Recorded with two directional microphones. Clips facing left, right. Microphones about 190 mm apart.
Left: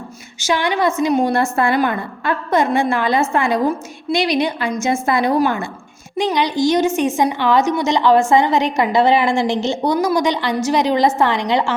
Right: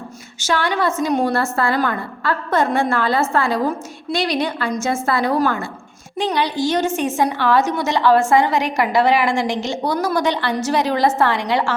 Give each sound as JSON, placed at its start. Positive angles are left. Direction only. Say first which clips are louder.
{"t": 0.4, "sound": "a woman's voice", "louder": "left 2 dB", "side_deg": 15}